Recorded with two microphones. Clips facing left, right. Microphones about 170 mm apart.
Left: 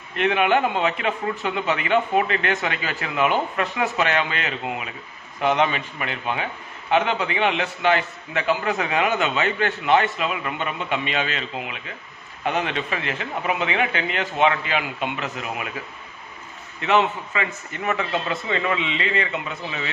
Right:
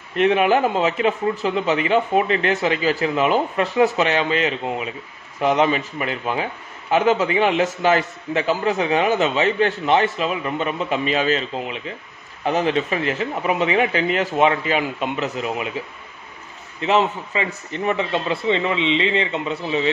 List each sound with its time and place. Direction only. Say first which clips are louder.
0.1 s a man's voice: right 3 dB; 35° right (ahead or behind)
16.8 s a man's voice: right 1 dB; 30° right (ahead or behind)